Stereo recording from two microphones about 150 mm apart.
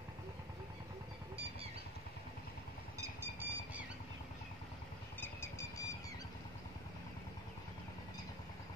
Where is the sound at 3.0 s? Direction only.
15° right (ahead or behind).